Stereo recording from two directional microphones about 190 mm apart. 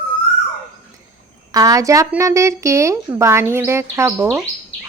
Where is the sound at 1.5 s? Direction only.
20° right (ahead or behind).